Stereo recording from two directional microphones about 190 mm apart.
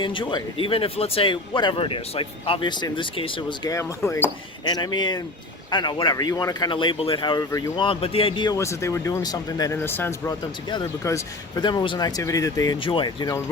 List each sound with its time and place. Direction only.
0.0 s speech: 25° left (ahead or behind)
8.5 s speech: 15° left (ahead or behind)